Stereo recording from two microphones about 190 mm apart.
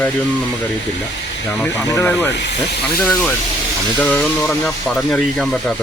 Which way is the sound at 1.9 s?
15° left (ahead or behind).